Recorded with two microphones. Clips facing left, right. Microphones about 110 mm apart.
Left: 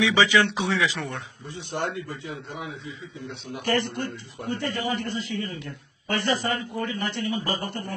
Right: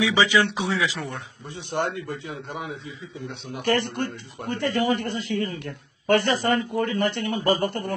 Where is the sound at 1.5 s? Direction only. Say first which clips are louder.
Right 3 dB; 55° right (ahead or behind).